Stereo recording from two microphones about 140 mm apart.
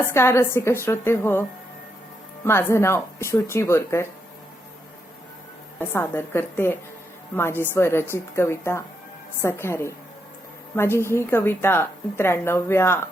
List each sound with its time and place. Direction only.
0.1 s a woman's voice: 20° left (ahead or behind)
5.9 s a woman's voice: 15° left (ahead or behind)